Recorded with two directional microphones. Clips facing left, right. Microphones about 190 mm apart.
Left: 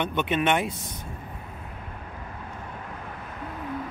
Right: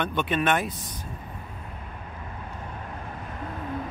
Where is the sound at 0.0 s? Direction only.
20° left (ahead or behind).